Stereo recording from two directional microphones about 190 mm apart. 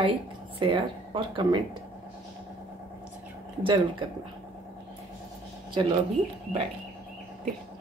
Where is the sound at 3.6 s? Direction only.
25° right (ahead or behind).